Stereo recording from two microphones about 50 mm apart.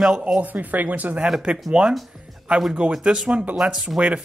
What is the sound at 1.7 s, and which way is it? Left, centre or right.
Speech, centre.